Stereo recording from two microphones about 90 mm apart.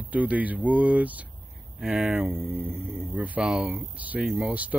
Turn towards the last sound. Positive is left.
turn(degrees=-15)  # may be behind; listen again after turning